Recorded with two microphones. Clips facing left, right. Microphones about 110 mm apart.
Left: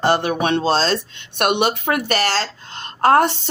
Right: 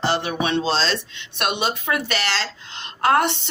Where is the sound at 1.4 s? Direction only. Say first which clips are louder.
Left 5 dB; 60° left (ahead or behind).